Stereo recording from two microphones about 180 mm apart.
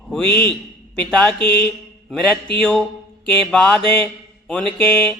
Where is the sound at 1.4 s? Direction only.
30° right (ahead or behind).